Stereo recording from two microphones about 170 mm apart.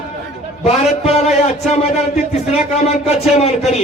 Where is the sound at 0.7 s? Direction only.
40° left (ahead or behind).